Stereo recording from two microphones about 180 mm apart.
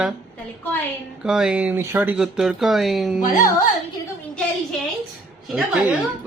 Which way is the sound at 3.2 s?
50° left (ahead or behind).